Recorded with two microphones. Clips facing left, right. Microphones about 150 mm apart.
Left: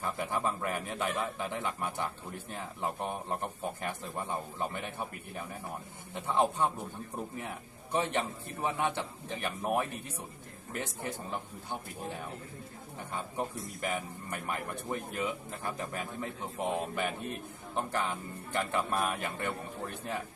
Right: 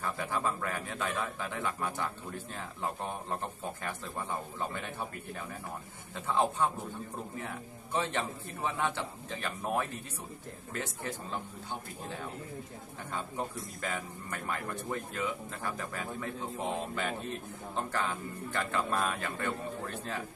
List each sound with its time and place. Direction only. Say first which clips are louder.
0.0 s a man's voice: even; 15° left (ahead or behind)
11.0 s a man's voice: even; 15° left (ahead or behind)
13.1 s a man's voice: left 1 dB; 20° left (ahead or behind)